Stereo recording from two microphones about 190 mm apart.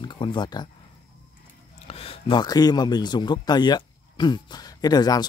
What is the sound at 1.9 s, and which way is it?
Speech, 30° left (ahead or behind).